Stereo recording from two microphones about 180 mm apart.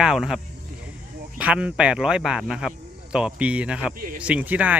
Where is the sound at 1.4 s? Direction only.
5° right (ahead or behind).